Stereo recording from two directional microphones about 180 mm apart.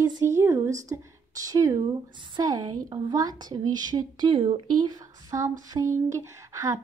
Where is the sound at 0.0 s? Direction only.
20° right (ahead or behind).